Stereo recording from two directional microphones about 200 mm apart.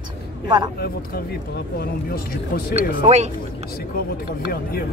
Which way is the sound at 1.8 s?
50° left (ahead or behind).